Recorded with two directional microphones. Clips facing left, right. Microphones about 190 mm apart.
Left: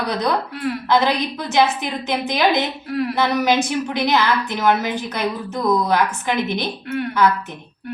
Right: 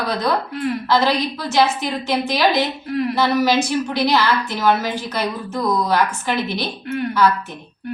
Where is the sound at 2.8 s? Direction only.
Centre (ahead or behind).